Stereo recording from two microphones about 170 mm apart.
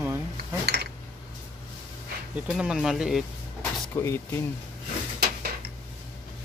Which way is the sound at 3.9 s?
15° left (ahead or behind).